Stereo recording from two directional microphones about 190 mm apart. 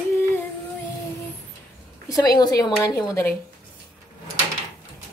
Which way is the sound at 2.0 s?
20° left (ahead or behind).